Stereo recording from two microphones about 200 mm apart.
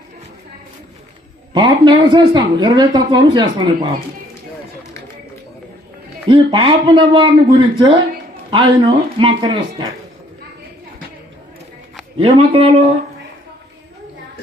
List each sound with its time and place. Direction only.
1.5 s speech: 20° right (ahead or behind)
6.2 s speech: 25° right (ahead or behind)
12.1 s speech: 30° right (ahead or behind)